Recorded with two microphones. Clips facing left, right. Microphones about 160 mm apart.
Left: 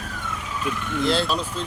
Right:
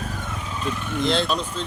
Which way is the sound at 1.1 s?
5° left (ahead or behind).